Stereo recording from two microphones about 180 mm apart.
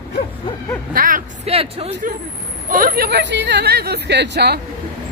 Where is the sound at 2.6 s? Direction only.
50° right (ahead or behind).